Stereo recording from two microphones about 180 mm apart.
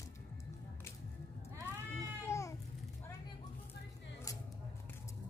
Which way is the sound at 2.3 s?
15° left (ahead or behind).